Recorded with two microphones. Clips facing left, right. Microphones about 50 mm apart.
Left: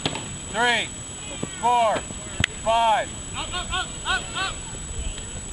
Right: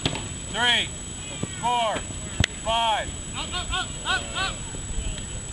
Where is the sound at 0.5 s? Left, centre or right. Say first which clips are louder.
Left 2 dB; right.